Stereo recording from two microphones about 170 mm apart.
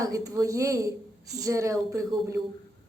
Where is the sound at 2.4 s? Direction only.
Centre (ahead or behind).